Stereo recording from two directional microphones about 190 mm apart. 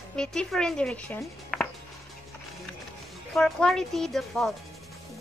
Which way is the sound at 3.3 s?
5° left (ahead or behind).